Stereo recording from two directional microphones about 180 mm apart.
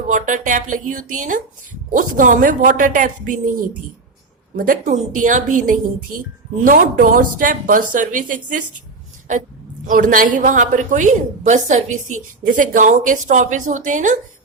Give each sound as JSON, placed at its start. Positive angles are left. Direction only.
{"t": 0.1, "sound": "a woman's voice", "side_deg": -45}
{"t": 9.8, "sound": "a woman's voice", "side_deg": -50}